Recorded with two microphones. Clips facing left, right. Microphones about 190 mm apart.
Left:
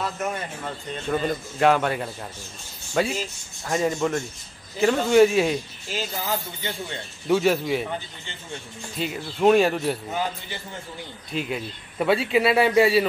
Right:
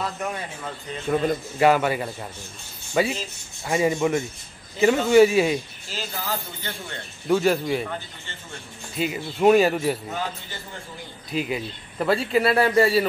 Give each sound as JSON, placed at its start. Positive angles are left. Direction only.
{"t": 0.0, "sound": "a man's voice", "side_deg": 0}
{"t": 2.9, "sound": "filing", "side_deg": -5}
{"t": 3.6, "sound": "a man's voice", "side_deg": -5}
{"t": 5.9, "sound": "speech", "side_deg": 15}
{"t": 7.2, "sound": "a man's voice", "side_deg": 0}
{"t": 8.9, "sound": "a man's voice", "side_deg": -5}
{"t": 11.3, "sound": "a man's voice", "side_deg": 0}